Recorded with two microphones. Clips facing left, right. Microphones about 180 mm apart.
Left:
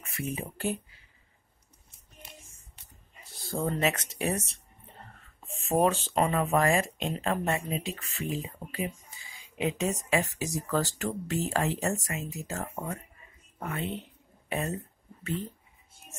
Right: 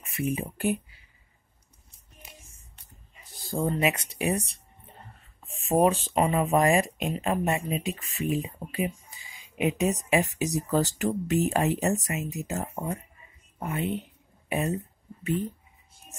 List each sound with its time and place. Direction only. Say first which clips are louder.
0.2 s speech: right 5 dB; 15° right (ahead or behind)
3.4 s speech: right 2 dB; 10° right (ahead or behind)
5.7 s speech: right 3 dB; 15° right (ahead or behind)